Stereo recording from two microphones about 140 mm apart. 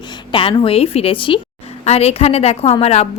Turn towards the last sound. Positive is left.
turn(degrees=50)  # may be behind; listen again after turning